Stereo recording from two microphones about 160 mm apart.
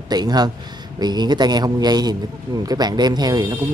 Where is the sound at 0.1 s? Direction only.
25° right (ahead or behind).